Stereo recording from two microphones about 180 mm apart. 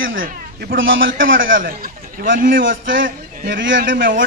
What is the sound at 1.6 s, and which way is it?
Speech, 50° right (ahead or behind).